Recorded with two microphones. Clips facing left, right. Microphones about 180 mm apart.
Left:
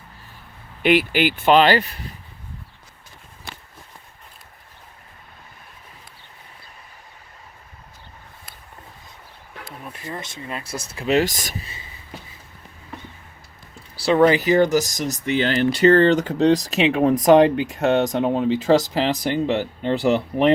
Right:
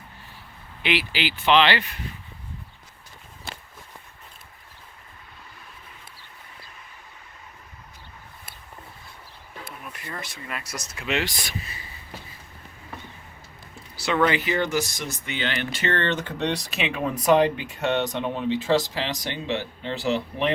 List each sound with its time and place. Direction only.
0.8 s speech: 50° left (ahead or behind)
9.8 s speech: 30° left (ahead or behind)
13.9 s speech: 35° left (ahead or behind); by 20.5 s 50° left (ahead or behind)